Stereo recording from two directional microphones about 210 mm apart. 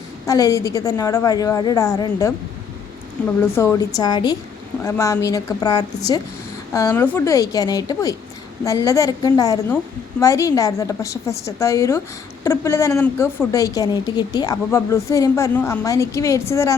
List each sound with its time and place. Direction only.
0.3 s a woman's voice: 15° left (ahead or behind)
3.4 s a woman's voice: 10° left (ahead or behind)